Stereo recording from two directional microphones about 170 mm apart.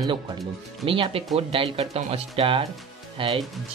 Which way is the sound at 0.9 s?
30° right (ahead or behind).